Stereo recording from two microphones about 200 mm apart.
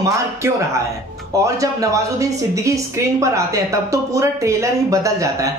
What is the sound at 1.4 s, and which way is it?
Speech, 15° right (ahead or behind).